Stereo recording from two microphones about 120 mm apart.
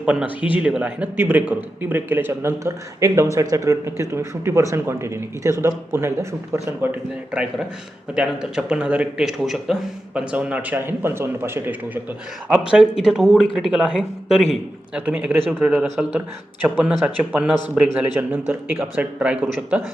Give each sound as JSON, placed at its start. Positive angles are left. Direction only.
{"t": 0.0, "sound": "a man's voice", "side_deg": -10}
{"t": 7.3, "sound": "a man's voice", "side_deg": -10}
{"t": 13.0, "sound": "a man's voice", "side_deg": -5}